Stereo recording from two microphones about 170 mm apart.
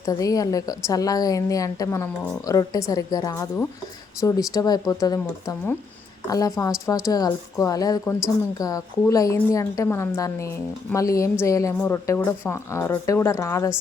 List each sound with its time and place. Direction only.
0.0 s a woman's voice: 20° left (ahead or behind)